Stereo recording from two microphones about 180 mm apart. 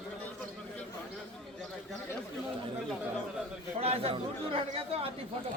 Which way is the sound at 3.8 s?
35° right (ahead or behind).